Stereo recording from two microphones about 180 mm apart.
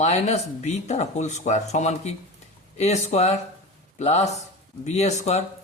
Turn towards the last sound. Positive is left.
turn(degrees=40)  # may be behind; listen again after turning